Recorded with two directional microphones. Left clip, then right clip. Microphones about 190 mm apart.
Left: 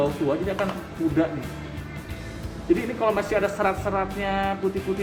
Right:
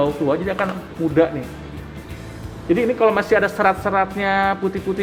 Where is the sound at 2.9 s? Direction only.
50° right (ahead or behind).